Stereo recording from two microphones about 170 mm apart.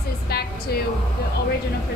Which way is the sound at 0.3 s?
65° left (ahead or behind).